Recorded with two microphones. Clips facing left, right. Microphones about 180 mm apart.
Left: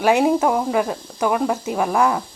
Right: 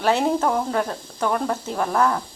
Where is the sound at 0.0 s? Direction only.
10° left (ahead or behind).